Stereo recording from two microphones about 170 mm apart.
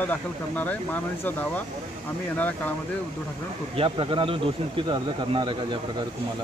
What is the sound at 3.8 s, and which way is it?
A man's voice, 30° right (ahead or behind).